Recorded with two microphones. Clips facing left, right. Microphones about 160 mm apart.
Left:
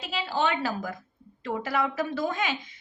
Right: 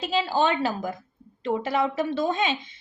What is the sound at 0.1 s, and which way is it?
A woman's voice, 35° right (ahead or behind).